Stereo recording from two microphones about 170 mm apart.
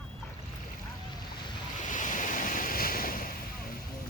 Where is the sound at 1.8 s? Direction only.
50° left (ahead or behind).